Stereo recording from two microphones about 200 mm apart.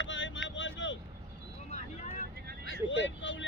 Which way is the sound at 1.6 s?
35° left (ahead or behind).